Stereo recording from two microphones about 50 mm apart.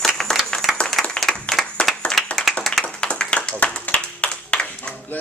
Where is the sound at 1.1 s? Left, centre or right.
Centre.